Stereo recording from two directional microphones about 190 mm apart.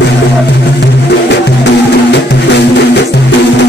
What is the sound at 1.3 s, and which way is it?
Music, 65° left (ahead or behind).